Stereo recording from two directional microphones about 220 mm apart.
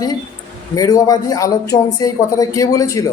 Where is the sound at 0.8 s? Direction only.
15° left (ahead or behind).